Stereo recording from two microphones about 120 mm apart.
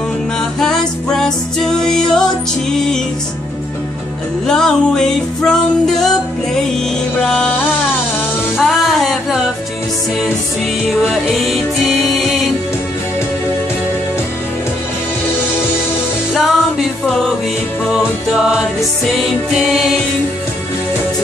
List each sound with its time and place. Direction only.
0.6 s music: 5° left (ahead or behind)
4.5 s music: 5° left (ahead or behind)
7.2 s music: 5° left (ahead or behind)
8.6 s music: centre (ahead or behind)
10.9 s music: centre (ahead or behind)
16.3 s music: centre (ahead or behind)